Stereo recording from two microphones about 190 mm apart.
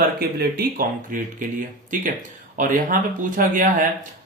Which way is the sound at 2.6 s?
45° right (ahead or behind).